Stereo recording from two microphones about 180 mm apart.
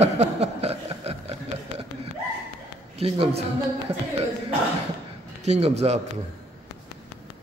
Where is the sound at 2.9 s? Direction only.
30° right (ahead or behind).